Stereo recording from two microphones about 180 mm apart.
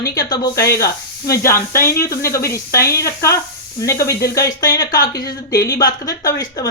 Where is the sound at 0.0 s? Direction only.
20° left (ahead or behind).